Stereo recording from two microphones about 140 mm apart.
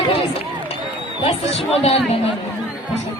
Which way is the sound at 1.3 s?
45° left (ahead or behind).